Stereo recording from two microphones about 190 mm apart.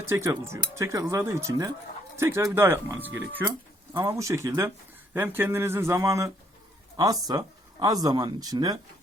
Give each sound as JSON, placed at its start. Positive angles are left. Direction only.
{"t": 0.0, "sound": "speech", "side_deg": -15}